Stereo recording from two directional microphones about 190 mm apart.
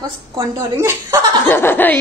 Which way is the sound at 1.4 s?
10° left (ahead or behind).